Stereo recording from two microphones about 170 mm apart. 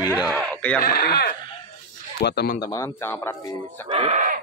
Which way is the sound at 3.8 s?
35° right (ahead or behind).